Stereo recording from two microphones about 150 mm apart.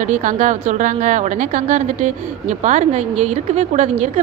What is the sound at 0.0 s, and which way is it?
A woman's voice, 55° right (ahead or behind).